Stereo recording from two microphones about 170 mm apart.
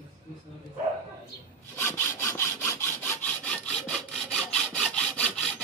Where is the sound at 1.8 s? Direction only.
15° left (ahead or behind).